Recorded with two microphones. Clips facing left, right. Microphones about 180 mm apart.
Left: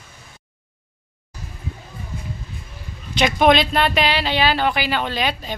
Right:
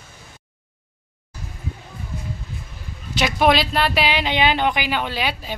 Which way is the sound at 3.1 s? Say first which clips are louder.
Left 2 dB; 5° right (ahead or behind).